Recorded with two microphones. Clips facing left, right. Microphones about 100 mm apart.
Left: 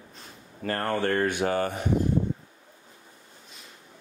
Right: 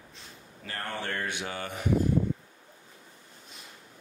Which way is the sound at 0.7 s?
50° left (ahead or behind).